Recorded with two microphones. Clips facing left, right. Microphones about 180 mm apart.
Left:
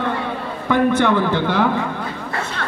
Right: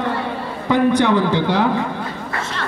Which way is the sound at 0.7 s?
15° right (ahead or behind).